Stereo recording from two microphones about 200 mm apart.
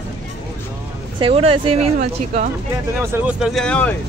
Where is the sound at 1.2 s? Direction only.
30° right (ahead or behind).